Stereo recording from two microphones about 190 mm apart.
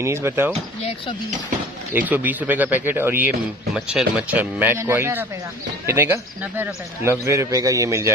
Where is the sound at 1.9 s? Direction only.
10° right (ahead or behind).